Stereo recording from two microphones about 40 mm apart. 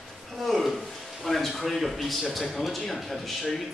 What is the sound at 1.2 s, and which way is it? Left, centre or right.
Speech, centre.